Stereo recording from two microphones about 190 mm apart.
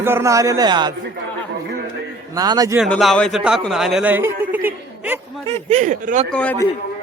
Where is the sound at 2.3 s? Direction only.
20° right (ahead or behind).